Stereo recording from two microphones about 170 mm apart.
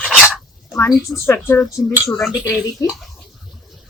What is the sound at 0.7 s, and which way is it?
Speech, 15° left (ahead or behind).